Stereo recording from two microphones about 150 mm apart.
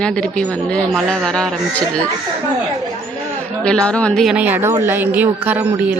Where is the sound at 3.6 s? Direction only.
5° left (ahead or behind).